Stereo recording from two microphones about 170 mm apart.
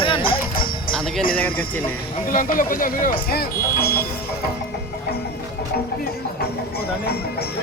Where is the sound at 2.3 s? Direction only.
55° left (ahead or behind).